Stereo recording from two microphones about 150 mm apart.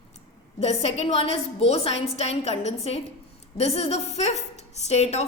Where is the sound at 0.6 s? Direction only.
45° left (ahead or behind).